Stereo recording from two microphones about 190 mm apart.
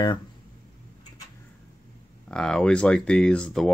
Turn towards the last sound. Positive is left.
turn(degrees=5)  # may be behind; listen again after turning